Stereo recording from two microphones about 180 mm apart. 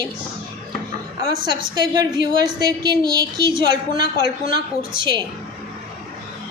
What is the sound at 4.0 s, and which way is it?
Speech, 55° left (ahead or behind).